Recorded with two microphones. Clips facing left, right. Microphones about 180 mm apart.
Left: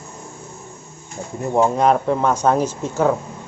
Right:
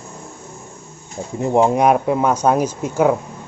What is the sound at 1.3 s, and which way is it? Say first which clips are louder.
Speech: right 3 dB; 20° right (ahead or behind).